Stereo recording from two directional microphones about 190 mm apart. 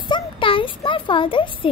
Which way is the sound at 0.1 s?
25° left (ahead or behind).